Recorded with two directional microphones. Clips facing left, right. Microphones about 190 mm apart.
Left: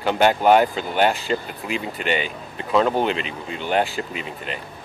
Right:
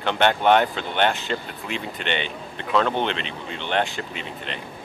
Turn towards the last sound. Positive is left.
turn(degrees=5)  # may be behind; listen again after turning